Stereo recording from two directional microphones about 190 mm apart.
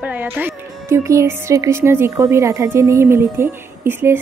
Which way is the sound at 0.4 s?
10° right (ahead or behind).